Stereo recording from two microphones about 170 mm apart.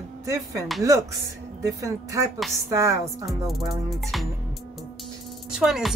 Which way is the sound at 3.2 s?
Centre (ahead or behind).